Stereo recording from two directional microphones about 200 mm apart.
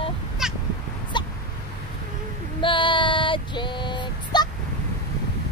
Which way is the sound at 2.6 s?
25° left (ahead or behind).